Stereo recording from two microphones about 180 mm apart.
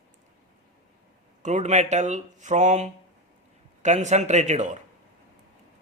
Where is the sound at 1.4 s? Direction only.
40° right (ahead or behind).